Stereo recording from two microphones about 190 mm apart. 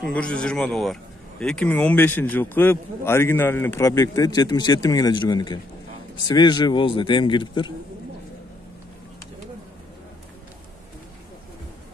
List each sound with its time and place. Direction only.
0.1 s a man's voice: 5° left (ahead or behind); by 7.7 s 25° left (ahead or behind)